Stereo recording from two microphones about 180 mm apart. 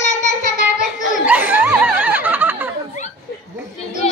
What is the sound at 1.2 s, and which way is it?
Snicker, 10° right (ahead or behind).